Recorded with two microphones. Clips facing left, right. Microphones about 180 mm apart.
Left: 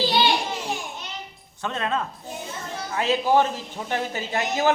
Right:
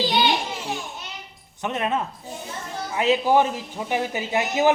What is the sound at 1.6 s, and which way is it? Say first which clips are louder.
Speech: right 2 dB; 20° right (ahead or behind).